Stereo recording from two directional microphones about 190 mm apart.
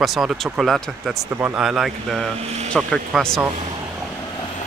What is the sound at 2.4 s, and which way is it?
Speech, 35° right (ahead or behind).